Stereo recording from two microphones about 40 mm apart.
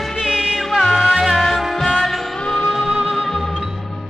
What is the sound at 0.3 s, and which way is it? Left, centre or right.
Music, centre.